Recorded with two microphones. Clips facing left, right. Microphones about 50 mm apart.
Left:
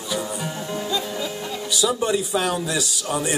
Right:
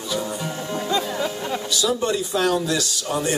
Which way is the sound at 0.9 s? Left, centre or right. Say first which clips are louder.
Right 6 dB; right.